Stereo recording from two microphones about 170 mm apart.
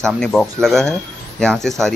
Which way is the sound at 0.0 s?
5° left (ahead or behind).